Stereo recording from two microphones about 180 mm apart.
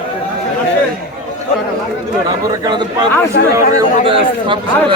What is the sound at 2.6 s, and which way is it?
Speech, 25° right (ahead or behind).